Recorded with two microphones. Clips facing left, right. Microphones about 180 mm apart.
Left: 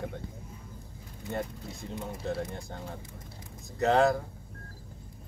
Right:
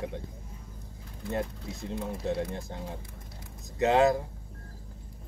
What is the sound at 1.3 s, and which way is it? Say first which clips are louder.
Speech: right 2 dB; centre (ahead or behind).